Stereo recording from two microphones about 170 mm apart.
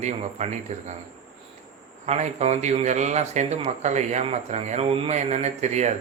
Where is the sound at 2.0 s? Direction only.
40° right (ahead or behind).